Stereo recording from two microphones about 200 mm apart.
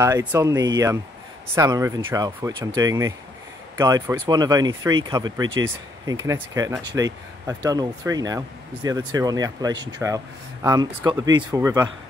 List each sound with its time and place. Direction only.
0.0 s speech: 10° right (ahead or behind)